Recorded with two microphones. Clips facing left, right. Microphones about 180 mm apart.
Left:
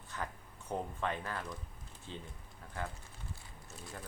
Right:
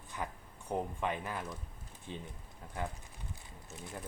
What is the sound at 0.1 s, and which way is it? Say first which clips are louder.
Speech: right 1 dB; 15° right (ahead or behind).